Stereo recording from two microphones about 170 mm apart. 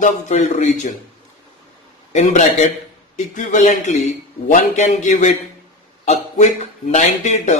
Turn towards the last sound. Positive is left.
turn(degrees=45)  # may be behind; listen again after turning